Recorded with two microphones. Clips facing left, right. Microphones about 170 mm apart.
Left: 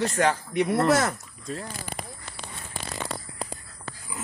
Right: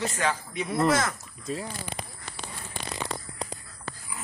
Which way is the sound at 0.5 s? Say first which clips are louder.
Left 7 dB; 70° left (ahead or behind).